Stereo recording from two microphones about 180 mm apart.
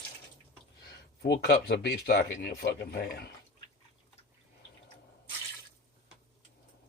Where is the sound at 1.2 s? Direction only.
60° left (ahead or behind).